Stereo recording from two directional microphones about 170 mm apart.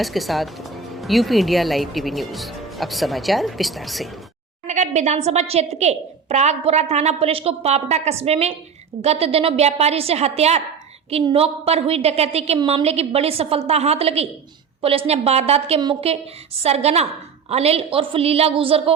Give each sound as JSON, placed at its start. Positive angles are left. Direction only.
{"t": 0.0, "sound": "speech", "side_deg": 0}
{"t": 4.6, "sound": "a woman's voice", "side_deg": -45}